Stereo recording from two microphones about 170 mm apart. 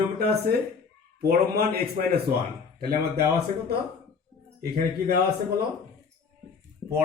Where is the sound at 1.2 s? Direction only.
65° right (ahead or behind).